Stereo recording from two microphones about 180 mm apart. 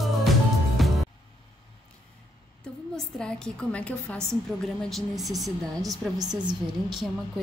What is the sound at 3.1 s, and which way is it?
A woman's voice, 5° left (ahead or behind).